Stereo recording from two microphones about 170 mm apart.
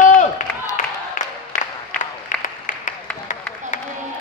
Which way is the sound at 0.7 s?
45° left (ahead or behind).